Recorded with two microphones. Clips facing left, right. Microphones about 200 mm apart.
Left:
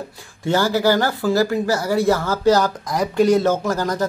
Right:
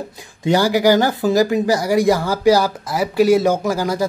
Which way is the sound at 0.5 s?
15° right (ahead or behind).